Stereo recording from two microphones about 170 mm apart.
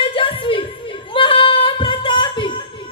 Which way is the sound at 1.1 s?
30° left (ahead or behind).